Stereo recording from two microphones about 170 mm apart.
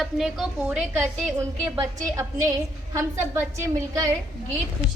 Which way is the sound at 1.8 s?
20° right (ahead or behind).